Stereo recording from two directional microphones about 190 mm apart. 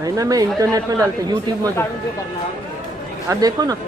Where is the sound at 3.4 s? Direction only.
20° right (ahead or behind).